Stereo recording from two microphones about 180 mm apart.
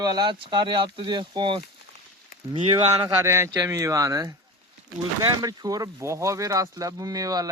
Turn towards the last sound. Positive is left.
turn(degrees=-20)  # may be behind; listen again after turning